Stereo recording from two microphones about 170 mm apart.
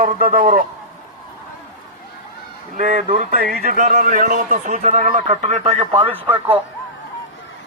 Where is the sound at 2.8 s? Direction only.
55° right (ahead or behind).